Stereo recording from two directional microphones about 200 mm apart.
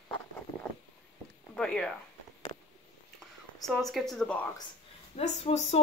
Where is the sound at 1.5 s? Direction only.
5° left (ahead or behind).